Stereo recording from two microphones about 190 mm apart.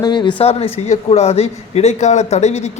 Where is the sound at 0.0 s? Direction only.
25° left (ahead or behind).